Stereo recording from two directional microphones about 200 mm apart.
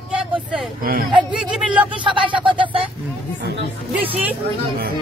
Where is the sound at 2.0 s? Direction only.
25° right (ahead or behind).